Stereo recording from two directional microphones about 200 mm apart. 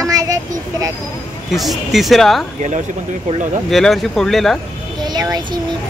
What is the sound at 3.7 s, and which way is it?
Speech, centre (ahead or behind).